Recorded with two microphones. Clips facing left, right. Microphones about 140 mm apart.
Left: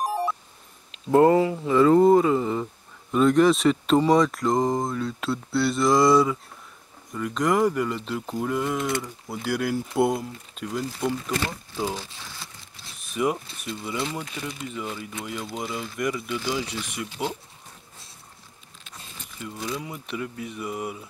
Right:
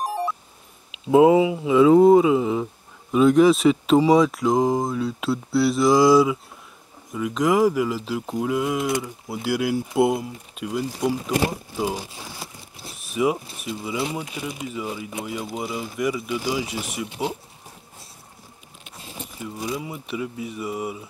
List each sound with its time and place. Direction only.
0.9 s speech: 5° right (ahead or behind)
11.1 s speech: 15° right (ahead or behind)
12.2 s a sound: 30° right (ahead or behind)
12.9 s speech: 5° right (ahead or behind)
17.0 s speech: 15° right (ahead or behind)
19.4 s speech: 10° right (ahead or behind)